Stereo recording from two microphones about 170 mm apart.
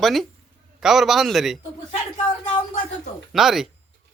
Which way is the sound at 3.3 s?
Centre (ahead or behind).